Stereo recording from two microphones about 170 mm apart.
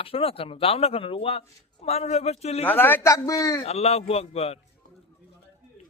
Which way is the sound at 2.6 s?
10° left (ahead or behind).